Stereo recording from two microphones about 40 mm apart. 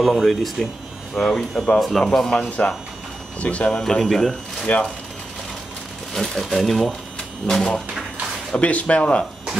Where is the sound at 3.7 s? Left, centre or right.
Centre.